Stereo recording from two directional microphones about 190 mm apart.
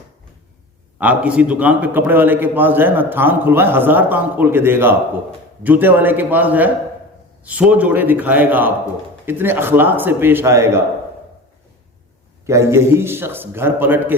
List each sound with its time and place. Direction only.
0.9 s a man's voice: 5° right (ahead or behind)
12.5 s a man's voice: 15° right (ahead or behind)